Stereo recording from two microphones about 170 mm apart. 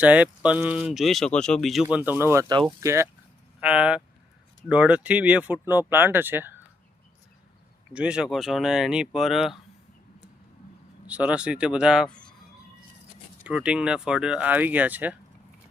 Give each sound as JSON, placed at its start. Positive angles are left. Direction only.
{"t": 0.0, "sound": "speech", "side_deg": -10}
{"t": 7.9, "sound": "speech", "side_deg": -5}
{"t": 11.0, "sound": "speech", "side_deg": -10}
{"t": 13.4, "sound": "speech", "side_deg": -5}